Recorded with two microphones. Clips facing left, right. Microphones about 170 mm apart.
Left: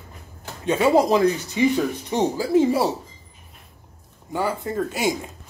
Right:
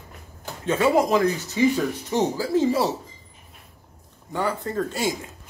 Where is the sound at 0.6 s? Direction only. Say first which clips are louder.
Left 2 dB; 20° left (ahead or behind).